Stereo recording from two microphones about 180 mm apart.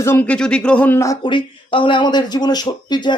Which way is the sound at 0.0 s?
10° left (ahead or behind).